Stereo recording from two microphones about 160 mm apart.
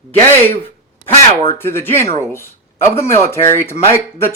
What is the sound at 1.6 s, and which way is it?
Speech, 15° left (ahead or behind).